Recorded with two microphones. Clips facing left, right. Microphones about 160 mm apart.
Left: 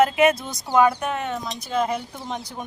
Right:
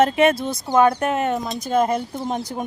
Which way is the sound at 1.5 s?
45° right (ahead or behind).